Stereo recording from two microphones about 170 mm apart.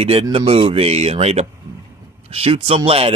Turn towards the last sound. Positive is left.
turn(degrees=-35)  # may be behind; listen again after turning